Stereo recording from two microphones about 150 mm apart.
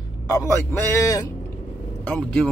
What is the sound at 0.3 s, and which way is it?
A man's voice, 20° left (ahead or behind).